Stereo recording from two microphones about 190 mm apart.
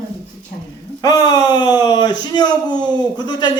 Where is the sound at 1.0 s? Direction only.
20° left (ahead or behind).